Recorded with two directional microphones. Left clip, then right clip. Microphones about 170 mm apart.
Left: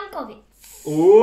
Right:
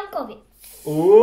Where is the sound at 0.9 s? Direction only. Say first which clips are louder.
Left 1 dB; centre (ahead or behind).